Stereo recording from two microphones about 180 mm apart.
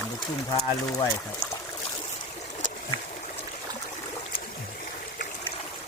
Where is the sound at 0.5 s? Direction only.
20° left (ahead or behind).